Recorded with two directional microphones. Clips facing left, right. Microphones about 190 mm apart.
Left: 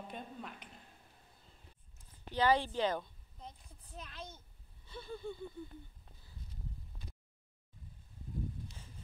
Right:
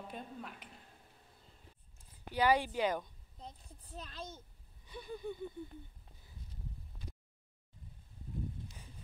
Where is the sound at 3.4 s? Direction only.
35° right (ahead or behind).